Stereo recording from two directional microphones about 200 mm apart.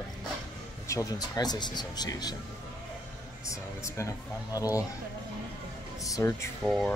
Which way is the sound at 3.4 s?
15° left (ahead or behind).